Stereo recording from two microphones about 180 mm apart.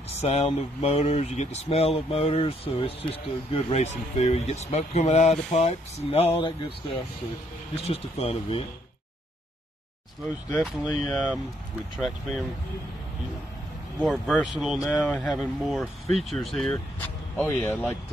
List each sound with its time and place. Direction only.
0.1 s speech: 35° left (ahead or behind)
7.7 s speech: 35° left (ahead or behind)
10.6 s speech: centre (ahead or behind)
13.9 s speech: centre (ahead or behind)